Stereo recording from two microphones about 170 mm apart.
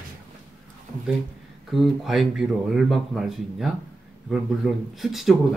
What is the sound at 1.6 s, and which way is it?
Speech, centre (ahead or behind).